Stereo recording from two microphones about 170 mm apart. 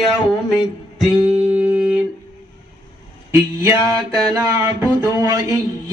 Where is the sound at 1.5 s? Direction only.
5° right (ahead or behind).